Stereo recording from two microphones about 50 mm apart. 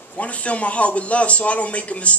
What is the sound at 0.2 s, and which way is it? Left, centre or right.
A woman's voice, left.